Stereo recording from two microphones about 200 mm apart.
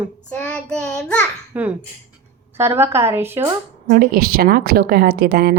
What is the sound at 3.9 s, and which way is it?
A woman's voice, 45° right (ahead or behind).